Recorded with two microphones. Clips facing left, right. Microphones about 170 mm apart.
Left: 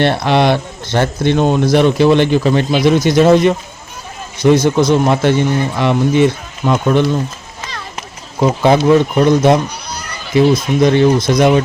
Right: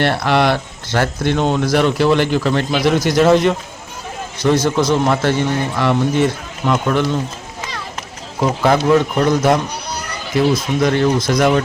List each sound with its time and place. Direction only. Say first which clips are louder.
0.0 s speech: left 3 dB; 20° left (ahead or behind)
8.4 s speech: left 4 dB; 20° left (ahead or behind)